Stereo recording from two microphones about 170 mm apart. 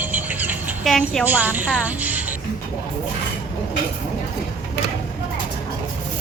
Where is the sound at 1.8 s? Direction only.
10° right (ahead or behind).